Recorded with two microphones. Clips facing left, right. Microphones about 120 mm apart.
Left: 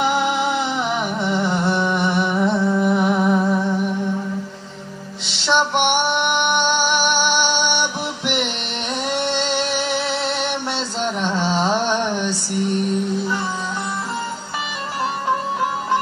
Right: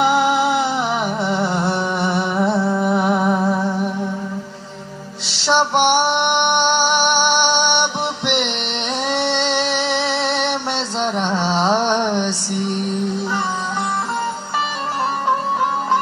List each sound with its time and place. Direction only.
0.0 s music: 35° right (ahead or behind)
2.0 s humming: 35° right (ahead or behind)
2.6 s music: 30° right (ahead or behind)
5.4 s music: 35° right (ahead or behind)
7.2 s music: 65° right (ahead or behind)
9.1 s a sound: 65° right (ahead or behind)
9.8 s music: 65° right (ahead or behind)
11.1 s a sound: 25° right (ahead or behind)